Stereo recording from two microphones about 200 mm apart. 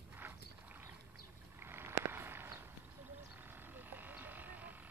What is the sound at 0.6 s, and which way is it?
Boat, 10° right (ahead or behind).